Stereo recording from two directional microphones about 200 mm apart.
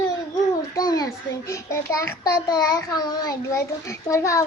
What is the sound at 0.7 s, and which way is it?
A child's voice, 20° left (ahead or behind).